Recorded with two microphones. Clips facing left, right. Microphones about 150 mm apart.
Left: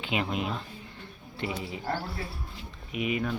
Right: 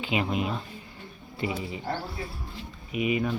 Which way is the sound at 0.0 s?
Centre (ahead or behind).